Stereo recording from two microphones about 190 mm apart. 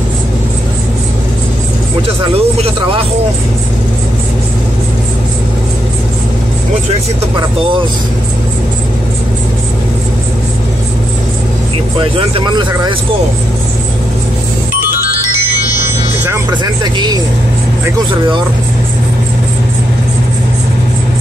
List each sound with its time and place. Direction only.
2.2 s speech: 30° right (ahead or behind)
12.0 s speech: 25° right (ahead or behind)
16.8 s speech: 20° right (ahead or behind)